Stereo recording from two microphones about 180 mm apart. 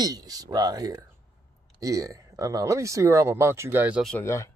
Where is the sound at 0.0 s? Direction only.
20° right (ahead or behind).